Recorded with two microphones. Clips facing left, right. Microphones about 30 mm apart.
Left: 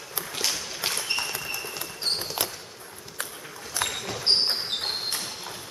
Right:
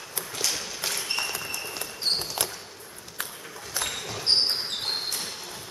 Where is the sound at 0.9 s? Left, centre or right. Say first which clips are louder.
Right 1 dB; centre.